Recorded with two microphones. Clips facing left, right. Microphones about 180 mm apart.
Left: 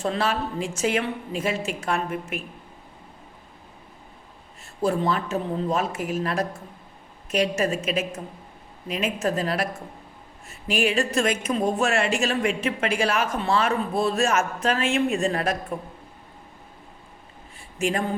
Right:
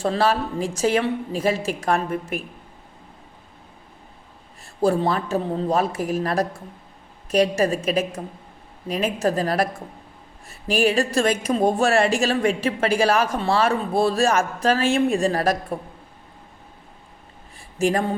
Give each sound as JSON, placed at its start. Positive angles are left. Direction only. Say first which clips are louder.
{"t": 0.0, "sound": "a woman's voice", "louder": "right 4 dB", "side_deg": -35}
{"t": 4.8, "sound": "a woman's voice", "louder": "right 3 dB", "side_deg": -35}
{"t": 10.7, "sound": "a woman's voice", "louder": "right 3 dB", "side_deg": -35}
{"t": 17.7, "sound": "a sound", "louder": "right 4 dB", "side_deg": -35}